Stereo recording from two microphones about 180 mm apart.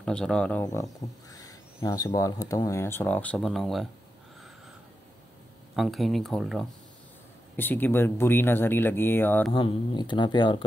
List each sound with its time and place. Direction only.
0.0 s speech: 5° left (ahead or behind)
1.3 s speech: 20° left (ahead or behind); by 3.9 s centre (ahead or behind)
5.8 s speech: centre (ahead or behind)
7.5 s speech: 10° left (ahead or behind)
9.5 s speech: 25° left (ahead or behind)